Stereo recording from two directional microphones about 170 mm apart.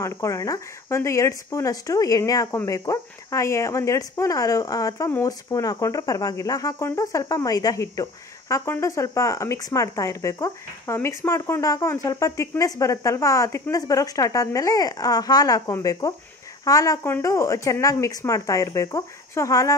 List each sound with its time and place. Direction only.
0.0 s speech: 15° left (ahead or behind)